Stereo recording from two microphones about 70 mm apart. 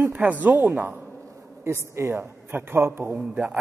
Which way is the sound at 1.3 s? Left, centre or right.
Right.